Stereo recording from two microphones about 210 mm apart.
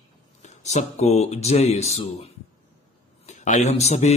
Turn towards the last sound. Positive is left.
turn(degrees=30)  # may be behind; listen again after turning